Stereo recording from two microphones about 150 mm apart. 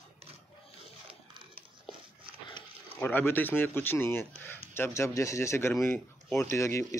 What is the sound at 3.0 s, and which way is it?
Speech, 15° left (ahead or behind).